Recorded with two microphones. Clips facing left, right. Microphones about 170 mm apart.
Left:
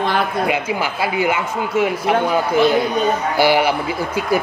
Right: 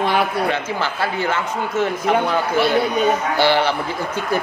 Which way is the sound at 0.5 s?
10° left (ahead or behind).